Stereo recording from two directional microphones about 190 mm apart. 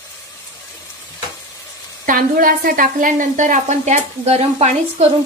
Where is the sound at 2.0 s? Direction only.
50° right (ahead or behind).